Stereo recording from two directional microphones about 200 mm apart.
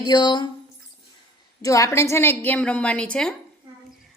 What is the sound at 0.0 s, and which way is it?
Speech, 20° left (ahead or behind).